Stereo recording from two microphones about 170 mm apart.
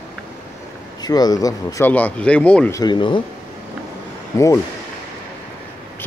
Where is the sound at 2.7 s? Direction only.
25° left (ahead or behind).